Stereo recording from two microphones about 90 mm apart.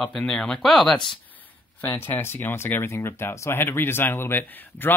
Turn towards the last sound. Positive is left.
turn(degrees=25)  # may be behind; listen again after turning